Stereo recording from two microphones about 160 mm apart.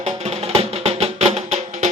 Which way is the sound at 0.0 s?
45° right (ahead or behind).